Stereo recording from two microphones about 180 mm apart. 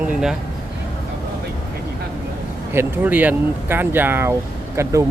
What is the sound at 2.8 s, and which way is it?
Speech, 10° right (ahead or behind).